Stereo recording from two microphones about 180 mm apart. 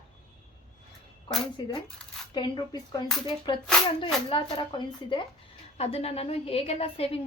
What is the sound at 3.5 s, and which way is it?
A woman's voice, 25° left (ahead or behind).